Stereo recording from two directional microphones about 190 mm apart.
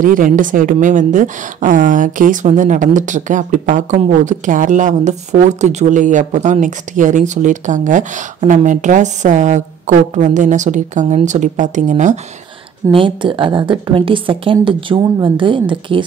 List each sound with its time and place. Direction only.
0.0 s a woman's voice: 45° right (ahead or behind)
12.9 s a woman's voice: 25° right (ahead or behind)